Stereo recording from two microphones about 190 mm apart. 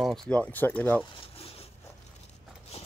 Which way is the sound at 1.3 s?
30° left (ahead or behind).